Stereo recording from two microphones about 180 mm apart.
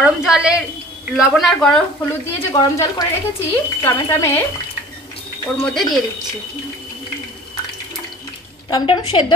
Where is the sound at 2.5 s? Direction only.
20° left (ahead or behind).